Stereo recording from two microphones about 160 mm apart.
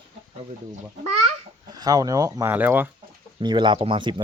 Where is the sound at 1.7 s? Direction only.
25° right (ahead or behind).